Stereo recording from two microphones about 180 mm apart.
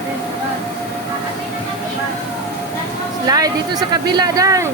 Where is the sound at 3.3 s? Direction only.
20° right (ahead or behind).